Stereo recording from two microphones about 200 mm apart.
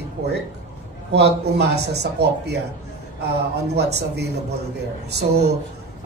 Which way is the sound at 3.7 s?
55° right (ahead or behind).